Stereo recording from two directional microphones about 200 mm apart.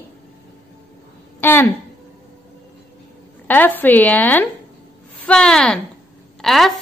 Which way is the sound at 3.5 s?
10° left (ahead or behind).